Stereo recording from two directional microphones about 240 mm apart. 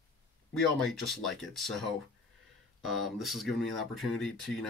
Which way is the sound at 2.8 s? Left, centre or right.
Centre.